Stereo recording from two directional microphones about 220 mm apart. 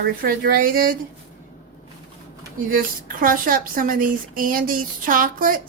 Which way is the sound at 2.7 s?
40° right (ahead or behind).